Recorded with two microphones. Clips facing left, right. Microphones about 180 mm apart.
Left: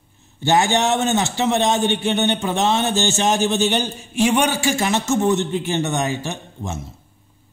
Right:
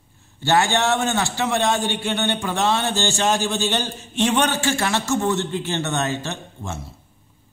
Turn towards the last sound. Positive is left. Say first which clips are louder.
# left 3 dB
turn(degrees=15)  # may be behind; listen again after turning